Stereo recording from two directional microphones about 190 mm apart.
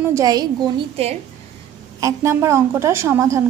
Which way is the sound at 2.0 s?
15° right (ahead or behind).